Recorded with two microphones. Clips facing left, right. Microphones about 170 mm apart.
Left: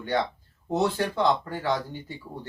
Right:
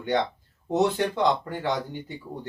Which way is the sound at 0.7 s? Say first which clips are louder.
Right 2 dB; 20° right (ahead or behind).